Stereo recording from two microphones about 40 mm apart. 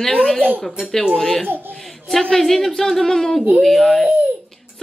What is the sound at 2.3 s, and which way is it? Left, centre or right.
Speech, centre.